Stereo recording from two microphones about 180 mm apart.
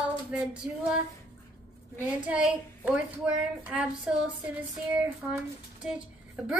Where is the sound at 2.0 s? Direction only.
5° right (ahead or behind).